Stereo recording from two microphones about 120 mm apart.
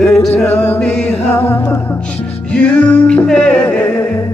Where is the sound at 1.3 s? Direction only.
20° left (ahead or behind).